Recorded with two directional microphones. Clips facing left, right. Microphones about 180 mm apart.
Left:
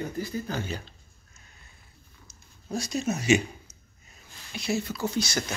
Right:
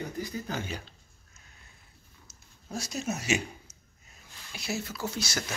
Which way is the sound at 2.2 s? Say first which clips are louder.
Left 5 dB; 5° right (ahead or behind).